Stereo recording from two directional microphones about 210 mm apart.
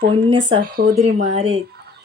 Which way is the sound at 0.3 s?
25° right (ahead or behind).